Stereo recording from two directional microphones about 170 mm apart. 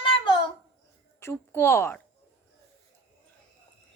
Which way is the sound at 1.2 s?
15° left (ahead or behind).